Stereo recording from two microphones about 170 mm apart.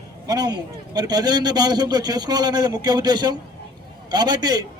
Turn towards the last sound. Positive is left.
turn(degrees=-25)  # may be behind; listen again after turning